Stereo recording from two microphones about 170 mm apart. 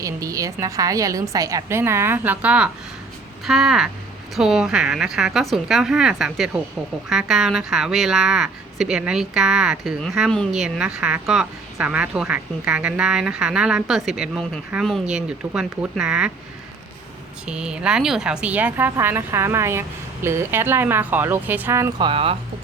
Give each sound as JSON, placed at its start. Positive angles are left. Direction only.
{"t": 0.0, "sound": "a woman's voice", "side_deg": -20}
{"t": 17.4, "sound": "a woman's voice", "side_deg": -5}
{"t": 21.9, "sound": "speech", "side_deg": -30}